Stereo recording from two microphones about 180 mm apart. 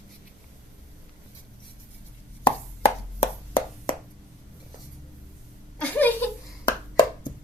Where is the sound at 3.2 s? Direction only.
30° left (ahead or behind).